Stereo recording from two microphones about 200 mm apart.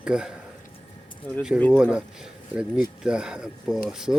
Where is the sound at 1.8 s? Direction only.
5° right (ahead or behind).